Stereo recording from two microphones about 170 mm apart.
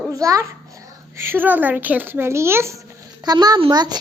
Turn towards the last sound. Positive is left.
turn(degrees=-25)  # may be behind; listen again after turning